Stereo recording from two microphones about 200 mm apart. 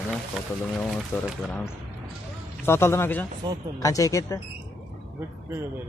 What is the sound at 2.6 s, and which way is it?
Speech, 10° left (ahead or behind).